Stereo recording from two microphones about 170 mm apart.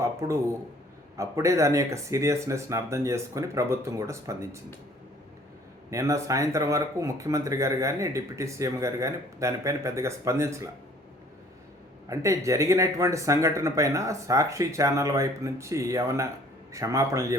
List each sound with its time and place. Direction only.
0.0 s speech: 15° right (ahead or behind)
5.9 s speech: 20° right (ahead or behind)
12.0 s a man's voice: 20° right (ahead or behind)